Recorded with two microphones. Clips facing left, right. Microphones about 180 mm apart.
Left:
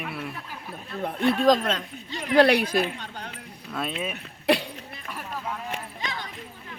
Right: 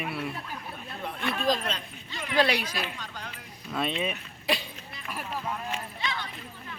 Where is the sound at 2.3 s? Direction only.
60° left (ahead or behind).